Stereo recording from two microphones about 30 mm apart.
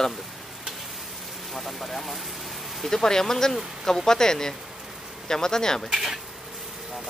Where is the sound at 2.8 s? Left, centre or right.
Centre.